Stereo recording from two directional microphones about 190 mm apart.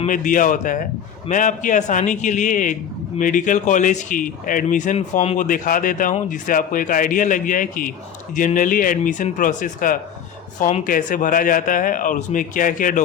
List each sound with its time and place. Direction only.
0.0 s a man's voice: 45° left (ahead or behind)